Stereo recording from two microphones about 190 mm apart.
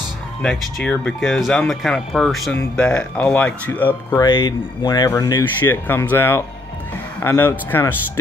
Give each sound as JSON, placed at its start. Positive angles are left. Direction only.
{"t": 0.4, "sound": "speech", "side_deg": 5}
{"t": 4.2, "sound": "speech", "side_deg": 25}